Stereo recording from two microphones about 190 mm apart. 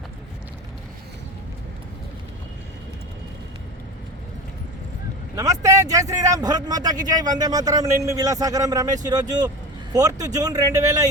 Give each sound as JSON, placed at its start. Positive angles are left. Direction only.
{"t": 5.4, "sound": "a man's voice", "side_deg": -15}